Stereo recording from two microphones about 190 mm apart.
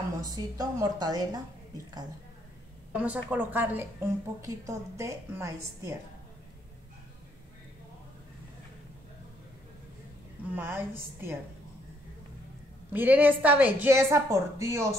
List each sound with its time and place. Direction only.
0.2 s a woman's voice: 20° right (ahead or behind)
2.9 s a woman's voice: 5° right (ahead or behind)
10.5 s a woman's voice: 10° right (ahead or behind)
12.9 s a woman's voice: 10° right (ahead or behind)